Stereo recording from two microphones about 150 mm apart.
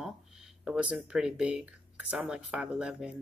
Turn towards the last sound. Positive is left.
turn(degrees=-5)  # may be behind; listen again after turning